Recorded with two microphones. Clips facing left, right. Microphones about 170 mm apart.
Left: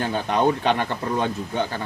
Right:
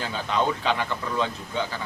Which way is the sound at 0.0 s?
55° left (ahead or behind).